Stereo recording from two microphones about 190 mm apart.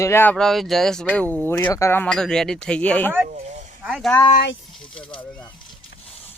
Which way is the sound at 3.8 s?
5° right (ahead or behind).